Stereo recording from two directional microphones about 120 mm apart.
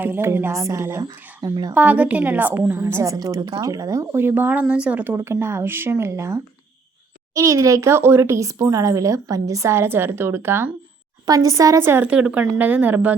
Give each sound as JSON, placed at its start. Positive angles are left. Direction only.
{"t": 0.0, "sound": "speech", "side_deg": -20}
{"t": 1.7, "sound": "speech", "side_deg": -15}
{"t": 4.2, "sound": "speech", "side_deg": -15}
{"t": 12.0, "sound": "speech", "side_deg": -10}